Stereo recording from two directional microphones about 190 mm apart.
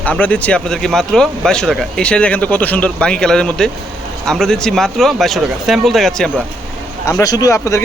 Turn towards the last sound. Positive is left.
turn(degrees=15)  # may be behind; listen again after turning